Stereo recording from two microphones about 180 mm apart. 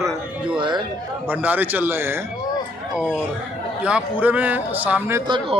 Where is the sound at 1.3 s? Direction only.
10° right (ahead or behind).